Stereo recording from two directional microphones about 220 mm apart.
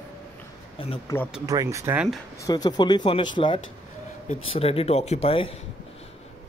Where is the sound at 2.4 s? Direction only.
20° left (ahead or behind).